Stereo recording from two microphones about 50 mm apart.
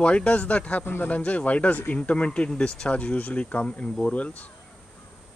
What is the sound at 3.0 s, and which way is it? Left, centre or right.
Speech, left.